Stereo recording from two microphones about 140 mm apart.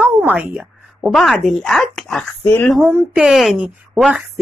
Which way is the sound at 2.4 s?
15° left (ahead or behind).